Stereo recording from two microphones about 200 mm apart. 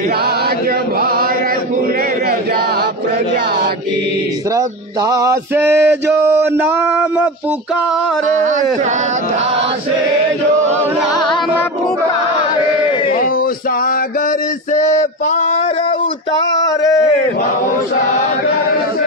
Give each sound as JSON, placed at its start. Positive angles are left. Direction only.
{"t": 0.2, "sound": "chant", "side_deg": -50}
{"t": 4.6, "sound": "male singing", "side_deg": -15}
{"t": 8.4, "sound": "speech", "side_deg": -40}
{"t": 12.4, "sound": "chant", "side_deg": 25}
{"t": 13.1, "sound": "music", "side_deg": 45}
{"t": 14.7, "sound": "a sound", "side_deg": 35}
{"t": 16.3, "sound": "a sound", "side_deg": 20}